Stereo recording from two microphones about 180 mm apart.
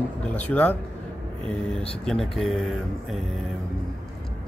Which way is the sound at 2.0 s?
Centre (ahead or behind).